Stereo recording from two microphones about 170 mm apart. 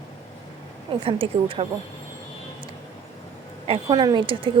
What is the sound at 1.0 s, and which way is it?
Speech, 30° right (ahead or behind).